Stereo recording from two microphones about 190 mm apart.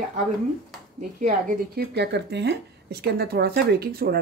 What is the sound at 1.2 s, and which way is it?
Speech, 45° right (ahead or behind).